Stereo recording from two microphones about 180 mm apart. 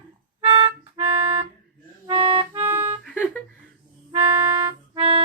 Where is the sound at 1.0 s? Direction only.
30° right (ahead or behind).